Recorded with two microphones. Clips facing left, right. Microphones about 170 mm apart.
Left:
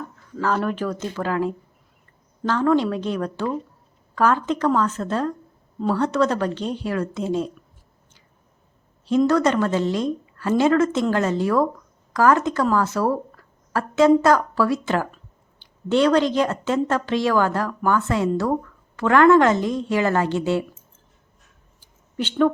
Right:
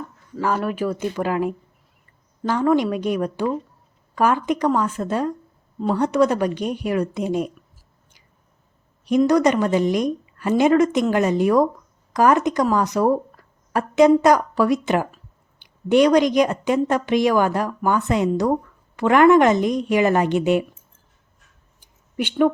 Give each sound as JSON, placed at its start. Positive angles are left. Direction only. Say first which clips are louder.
{"t": 0.3, "sound": "speech", "louder": "even", "side_deg": -10}
{"t": 9.0, "sound": "speech", "louder": "right 2 dB", "side_deg": -15}
{"t": 21.8, "sound": "a sound", "louder": "right 2 dB", "side_deg": -15}